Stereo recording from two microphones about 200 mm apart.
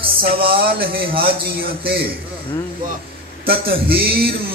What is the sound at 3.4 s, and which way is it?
Speech, 50° right (ahead or behind).